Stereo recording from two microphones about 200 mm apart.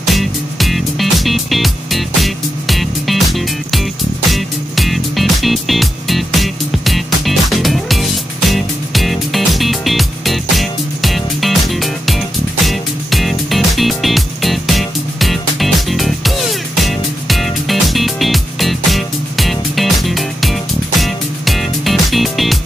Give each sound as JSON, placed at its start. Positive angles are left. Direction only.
{"t": 0.0, "sound": "music", "side_deg": 0}